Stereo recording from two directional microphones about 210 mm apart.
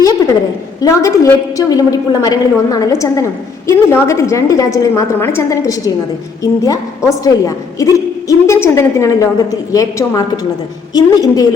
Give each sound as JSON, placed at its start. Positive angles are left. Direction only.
{"t": 0.8, "sound": "a woman's voice", "side_deg": 15}